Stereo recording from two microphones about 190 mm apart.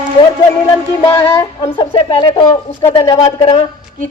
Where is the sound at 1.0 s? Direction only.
15° left (ahead or behind).